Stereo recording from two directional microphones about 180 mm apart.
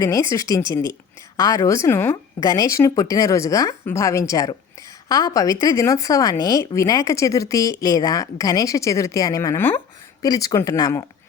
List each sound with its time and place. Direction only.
0.0 s speech: 15° left (ahead or behind)